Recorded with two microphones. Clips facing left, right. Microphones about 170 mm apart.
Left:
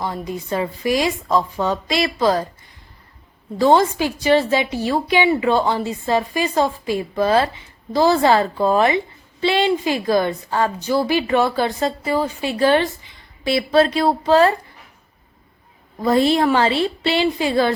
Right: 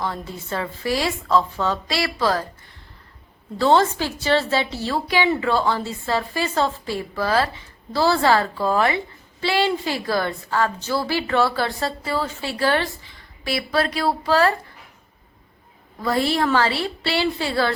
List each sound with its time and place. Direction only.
0.0 s a woman's voice: 15° left (ahead or behind)
3.6 s a woman's voice: 15° left (ahead or behind)
16.0 s a woman's voice: 20° left (ahead or behind)